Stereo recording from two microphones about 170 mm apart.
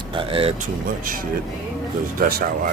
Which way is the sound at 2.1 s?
60° right (ahead or behind).